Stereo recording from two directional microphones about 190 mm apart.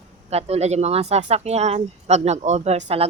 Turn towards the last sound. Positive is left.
turn(degrees=-35)  # may be behind; listen again after turning